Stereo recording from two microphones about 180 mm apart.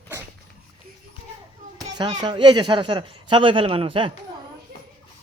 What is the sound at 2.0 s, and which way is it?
A man's voice, 25° right (ahead or behind).